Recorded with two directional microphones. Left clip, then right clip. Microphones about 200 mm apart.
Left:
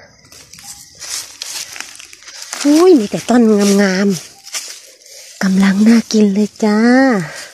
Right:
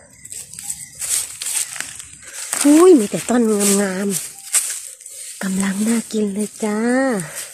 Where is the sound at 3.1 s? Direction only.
30° left (ahead or behind).